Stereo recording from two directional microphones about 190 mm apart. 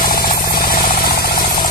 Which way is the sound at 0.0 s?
50° left (ahead or behind).